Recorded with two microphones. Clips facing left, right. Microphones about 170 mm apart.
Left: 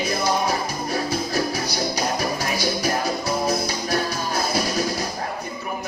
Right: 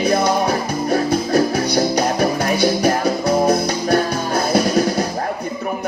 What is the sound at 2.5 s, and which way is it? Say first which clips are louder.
Music: right 8 dB; 60° right (ahead or behind).